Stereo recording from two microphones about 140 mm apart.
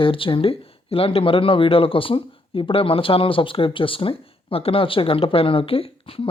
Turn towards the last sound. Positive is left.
turn(degrees=40)  # may be behind; listen again after turning